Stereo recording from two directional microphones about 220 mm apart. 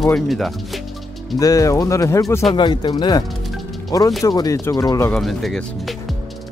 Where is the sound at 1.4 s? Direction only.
15° left (ahead or behind).